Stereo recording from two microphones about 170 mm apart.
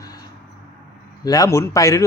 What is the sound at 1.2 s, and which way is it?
Speech, 20° left (ahead or behind).